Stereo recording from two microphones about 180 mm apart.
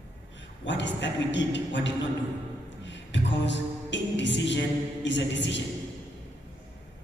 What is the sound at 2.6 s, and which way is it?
Music, 85° left.